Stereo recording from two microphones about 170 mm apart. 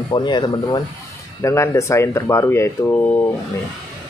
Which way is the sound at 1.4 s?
15° left (ahead or behind).